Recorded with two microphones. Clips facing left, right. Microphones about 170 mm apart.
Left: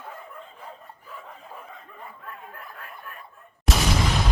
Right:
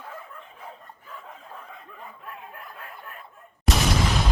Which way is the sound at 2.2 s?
20° right (ahead or behind).